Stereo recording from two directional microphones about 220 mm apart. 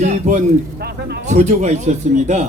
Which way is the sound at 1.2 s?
35° right (ahead or behind).